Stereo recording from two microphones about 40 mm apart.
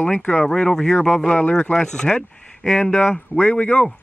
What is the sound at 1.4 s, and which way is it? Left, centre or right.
Speech, left.